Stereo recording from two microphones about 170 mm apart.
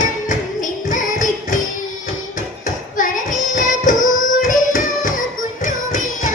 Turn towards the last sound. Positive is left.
turn(degrees=50)  # may be behind; listen again after turning